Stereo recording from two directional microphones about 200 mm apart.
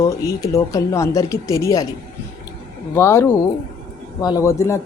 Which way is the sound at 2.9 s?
10° left (ahead or behind).